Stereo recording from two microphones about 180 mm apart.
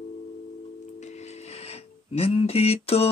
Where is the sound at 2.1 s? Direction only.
35° left (ahead or behind).